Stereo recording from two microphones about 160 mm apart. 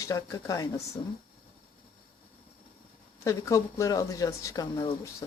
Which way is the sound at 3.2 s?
20° left (ahead or behind).